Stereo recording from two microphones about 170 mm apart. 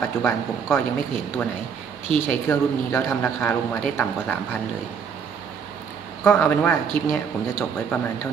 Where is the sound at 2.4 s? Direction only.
15° left (ahead or behind).